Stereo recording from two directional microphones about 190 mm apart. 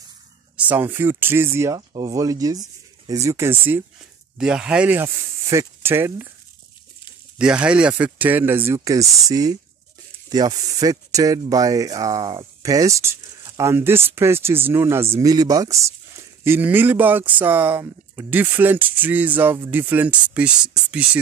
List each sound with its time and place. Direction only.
0.6 s speech: 10° right (ahead or behind)
7.3 s speech: 5° right (ahead or behind)